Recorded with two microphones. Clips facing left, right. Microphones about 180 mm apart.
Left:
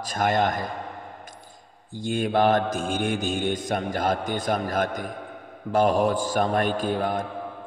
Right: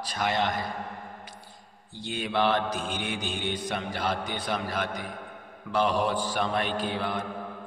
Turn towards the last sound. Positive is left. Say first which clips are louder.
# left 5 dB
turn(degrees=45)  # may be behind; listen again after turning